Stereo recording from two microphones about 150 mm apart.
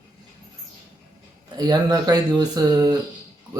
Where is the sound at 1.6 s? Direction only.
25° right (ahead or behind).